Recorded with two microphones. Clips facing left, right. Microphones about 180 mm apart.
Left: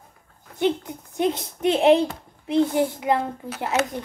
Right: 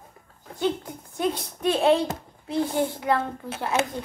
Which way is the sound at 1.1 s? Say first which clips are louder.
Left 3 dB; 20° left (ahead or behind).